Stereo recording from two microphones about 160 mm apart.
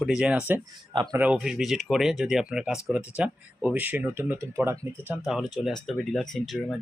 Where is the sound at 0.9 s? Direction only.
25° right (ahead or behind).